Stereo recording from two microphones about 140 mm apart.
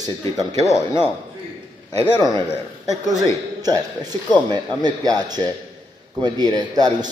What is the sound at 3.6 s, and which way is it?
A man's voice, 30° right (ahead or behind).